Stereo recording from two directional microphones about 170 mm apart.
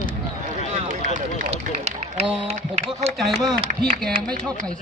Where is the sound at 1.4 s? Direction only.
40° right (ahead or behind).